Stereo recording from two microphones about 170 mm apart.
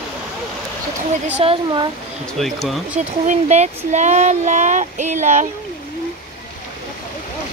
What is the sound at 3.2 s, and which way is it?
Speech, 45° right (ahead or behind).